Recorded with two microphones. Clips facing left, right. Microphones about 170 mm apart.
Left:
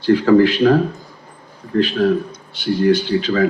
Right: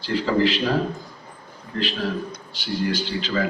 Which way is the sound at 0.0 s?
50° left (ahead or behind).